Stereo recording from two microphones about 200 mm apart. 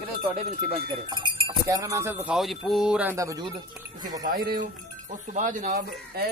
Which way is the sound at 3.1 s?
15° right (ahead or behind).